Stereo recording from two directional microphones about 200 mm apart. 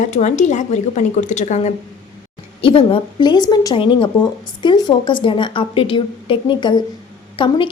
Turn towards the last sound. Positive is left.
turn(degrees=25)  # may be behind; listen again after turning